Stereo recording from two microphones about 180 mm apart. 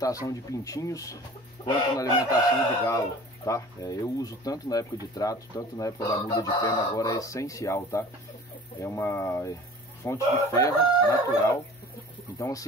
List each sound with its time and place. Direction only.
0.0 s speech: 20° left (ahead or behind)
1.6 s chicken: 20° left (ahead or behind)
2.0 s speech: 20° left (ahead or behind)